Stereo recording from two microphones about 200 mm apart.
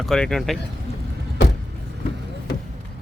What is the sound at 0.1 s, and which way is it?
Speech, centre (ahead or behind).